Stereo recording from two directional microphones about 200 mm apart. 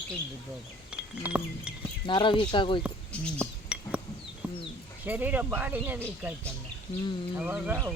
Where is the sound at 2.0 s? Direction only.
25° left (ahead or behind).